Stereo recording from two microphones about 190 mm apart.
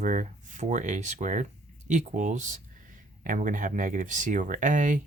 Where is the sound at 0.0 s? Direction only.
40° right (ahead or behind).